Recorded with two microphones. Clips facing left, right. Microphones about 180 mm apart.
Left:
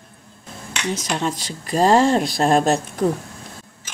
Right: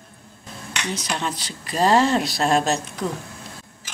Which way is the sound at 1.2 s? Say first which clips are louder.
Left 4 dB; 45° left (ahead or behind).